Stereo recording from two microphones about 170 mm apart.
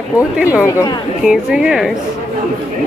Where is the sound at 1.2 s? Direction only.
5° right (ahead or behind).